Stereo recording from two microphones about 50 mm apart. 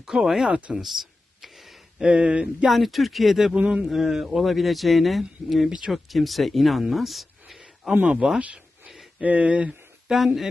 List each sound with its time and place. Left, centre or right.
0.0 s speech: centre
0.5 s speech: right
0.7 s a sound: centre
2.0 s speech: right
2.7 s speech: centre
3.5 s speech: centre
8.8 s a sound: centre
9.2 s speech: right
10.0 s speech: centre